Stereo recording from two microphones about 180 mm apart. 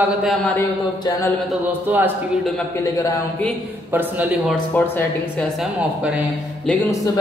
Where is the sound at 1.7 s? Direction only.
10° right (ahead or behind).